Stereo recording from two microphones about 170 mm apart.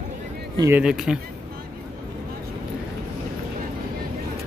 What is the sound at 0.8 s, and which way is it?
Speech, 5° right (ahead or behind).